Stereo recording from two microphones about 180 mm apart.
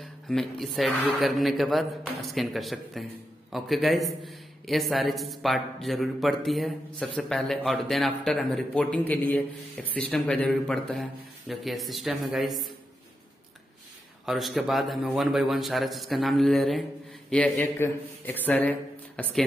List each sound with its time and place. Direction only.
0.0 s a man's voice: centre (ahead or behind)
14.2 s a man's voice: centre (ahead or behind)